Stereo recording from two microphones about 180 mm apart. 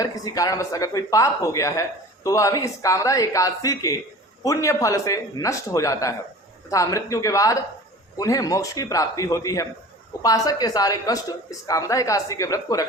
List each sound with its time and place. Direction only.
0.0 s speech: 20° left (ahead or behind)